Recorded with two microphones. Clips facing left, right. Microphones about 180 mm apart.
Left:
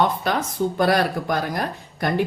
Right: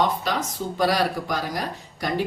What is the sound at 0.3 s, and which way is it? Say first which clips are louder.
A woman's voice: left 4 dB; 55° left (ahead or behind).